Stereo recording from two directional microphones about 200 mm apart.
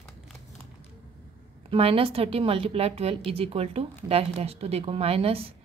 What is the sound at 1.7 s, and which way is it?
A woman's voice, 30° right (ahead or behind).